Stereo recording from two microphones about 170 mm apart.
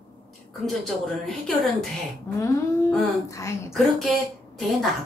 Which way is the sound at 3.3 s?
15° left (ahead or behind).